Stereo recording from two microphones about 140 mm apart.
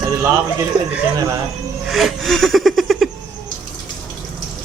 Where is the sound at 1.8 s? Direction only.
Centre (ahead or behind).